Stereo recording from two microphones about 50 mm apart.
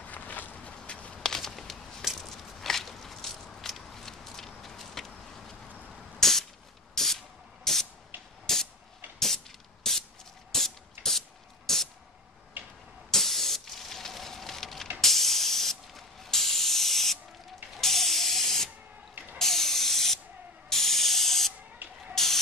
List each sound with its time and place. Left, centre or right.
0.0 s walk: left; by 2.0 s centre
2.1 s a sound: centre
7.0 s spray: centre
8.5 s a sound: centre
9.8 s spray: centre
10.5 s music: centre
12.6 s tick-tock: right
13.1 s spray: centre
21.8 s spray: right
22.1 s rodents: centre